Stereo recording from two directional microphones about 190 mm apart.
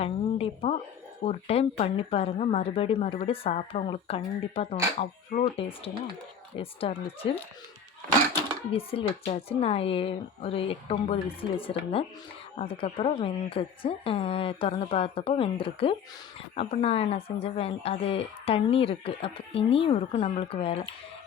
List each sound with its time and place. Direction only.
0.0 s a woman's voice: 30° left (ahead or behind)
8.7 s a woman's voice: 30° left (ahead or behind)